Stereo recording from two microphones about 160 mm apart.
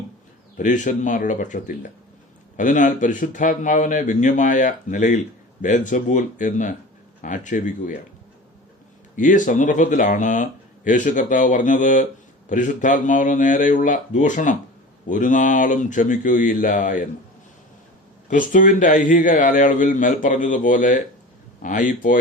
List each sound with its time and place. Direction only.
0.5 s speech: 50° left (ahead or behind)
9.1 s speech: 55° left (ahead or behind)
18.3 s a man's voice: 55° left (ahead or behind)